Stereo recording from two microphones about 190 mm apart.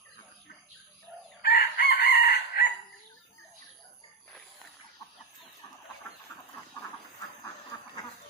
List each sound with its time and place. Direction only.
1.4 s chicken: 55° left (ahead or behind)
7.7 s duck: 20° left (ahead or behind)